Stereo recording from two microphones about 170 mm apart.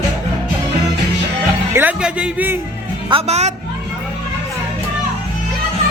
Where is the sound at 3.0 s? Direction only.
35° right (ahead or behind).